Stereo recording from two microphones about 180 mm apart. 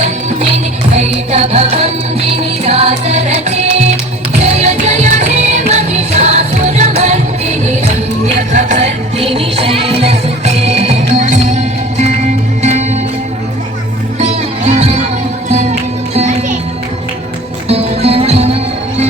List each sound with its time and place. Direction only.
0.9 s music: 35° right (ahead or behind)
14.2 s music: 40° right (ahead or behind)
17.7 s music: 35° right (ahead or behind)